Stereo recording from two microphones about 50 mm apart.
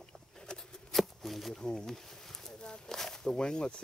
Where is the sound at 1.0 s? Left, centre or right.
Centre.